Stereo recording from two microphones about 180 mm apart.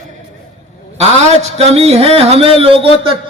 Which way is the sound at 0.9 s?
40° right (ahead or behind).